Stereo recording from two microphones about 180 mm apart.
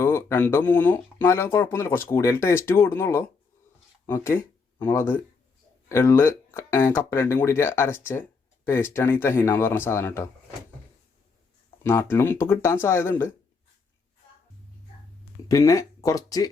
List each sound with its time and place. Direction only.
0.0 s speech: 15° left (ahead or behind)
11.8 s speech: 15° left (ahead or behind)
15.4 s speech: 20° left (ahead or behind)